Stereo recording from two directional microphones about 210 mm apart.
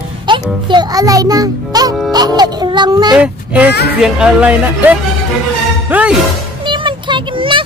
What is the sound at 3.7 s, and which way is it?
Speech, 50° left (ahead or behind).